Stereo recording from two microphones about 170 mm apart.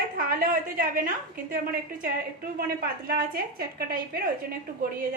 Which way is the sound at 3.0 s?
60° right (ahead or behind).